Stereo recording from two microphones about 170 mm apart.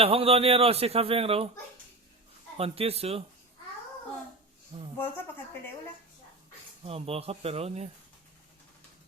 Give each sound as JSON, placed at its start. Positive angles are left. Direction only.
{"t": 0.0, "sound": "a man's voice", "side_deg": -35}
{"t": 2.6, "sound": "a man's voice", "side_deg": -35}
{"t": 4.7, "sound": "a man's voice", "side_deg": -35}
{"t": 6.8, "sound": "a man's voice", "side_deg": -35}